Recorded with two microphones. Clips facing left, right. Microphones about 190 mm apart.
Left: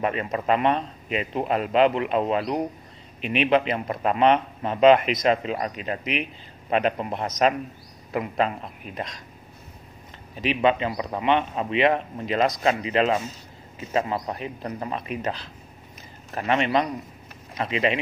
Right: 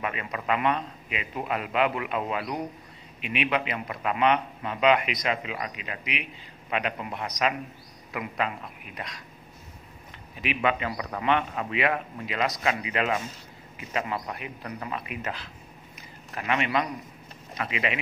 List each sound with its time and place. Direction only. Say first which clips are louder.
0.0 s speech: left 7 dB; 35° left (ahead or behind)
10.4 s a man's voice: left 5 dB; 30° left (ahead or behind); by 12.6 s 45° left (ahead or behind)
12.6 s a man's voice: left 6 dB; 30° left (ahead or behind)
16.3 s speech: left 4 dB; 30° left (ahead or behind)